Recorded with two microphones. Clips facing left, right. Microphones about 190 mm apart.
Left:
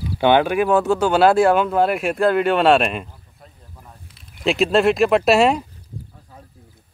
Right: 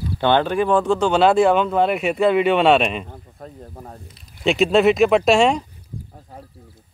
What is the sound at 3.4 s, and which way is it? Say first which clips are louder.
Snake: right 9 dB; 45° right (ahead or behind).